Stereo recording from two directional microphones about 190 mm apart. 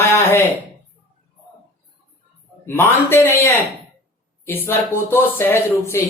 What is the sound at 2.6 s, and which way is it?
Speech, 10° left (ahead or behind).